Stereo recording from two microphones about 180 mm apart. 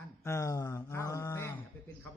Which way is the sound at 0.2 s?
15° left (ahead or behind).